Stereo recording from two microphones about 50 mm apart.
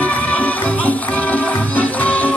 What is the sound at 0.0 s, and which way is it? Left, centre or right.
Music, left.